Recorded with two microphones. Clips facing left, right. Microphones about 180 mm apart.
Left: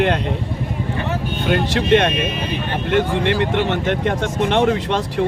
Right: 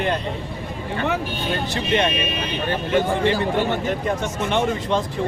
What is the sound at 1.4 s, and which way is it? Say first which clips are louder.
Speech: left 11 dB; 65° left (ahead or behind).